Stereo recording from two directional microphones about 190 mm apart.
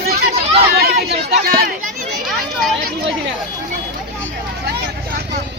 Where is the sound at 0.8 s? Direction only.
55° right (ahead or behind).